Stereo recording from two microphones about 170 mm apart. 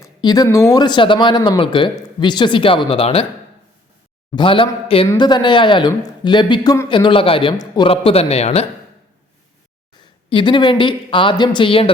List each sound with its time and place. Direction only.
0.0 s speech: 25° left (ahead or behind)
4.3 s a man's voice: 30° left (ahead or behind)
10.2 s speech: 30° left (ahead or behind)